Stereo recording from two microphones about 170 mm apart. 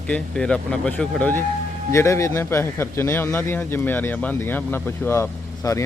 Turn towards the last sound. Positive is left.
turn(degrees=20)  # may be behind; listen again after turning